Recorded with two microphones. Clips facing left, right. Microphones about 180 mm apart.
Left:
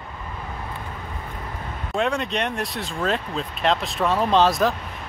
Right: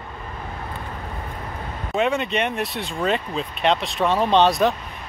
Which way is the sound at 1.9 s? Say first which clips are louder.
Right 2 dB; centre (ahead or behind).